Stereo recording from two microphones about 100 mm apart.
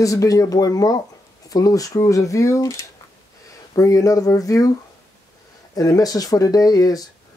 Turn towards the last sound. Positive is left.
turn(degrees=40)  # may be behind; listen again after turning